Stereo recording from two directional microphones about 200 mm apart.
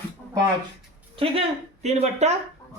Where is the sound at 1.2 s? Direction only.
30° right (ahead or behind).